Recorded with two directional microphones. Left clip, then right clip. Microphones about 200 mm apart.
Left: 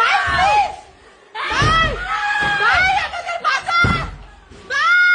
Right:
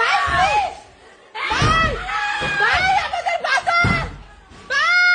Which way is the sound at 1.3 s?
20° left (ahead or behind).